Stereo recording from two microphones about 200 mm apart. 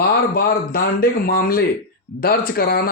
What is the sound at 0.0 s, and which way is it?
Speech, 50° left (ahead or behind).